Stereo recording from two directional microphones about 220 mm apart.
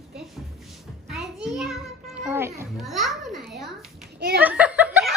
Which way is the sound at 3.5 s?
Centre (ahead or behind).